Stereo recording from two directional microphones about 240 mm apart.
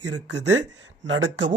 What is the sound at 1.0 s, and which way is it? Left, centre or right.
Speech, right.